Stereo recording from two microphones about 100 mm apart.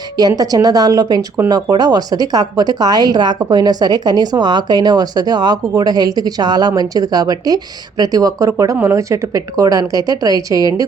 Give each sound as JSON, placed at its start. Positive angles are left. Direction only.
{"t": 0.2, "sound": "a woman's voice", "side_deg": -40}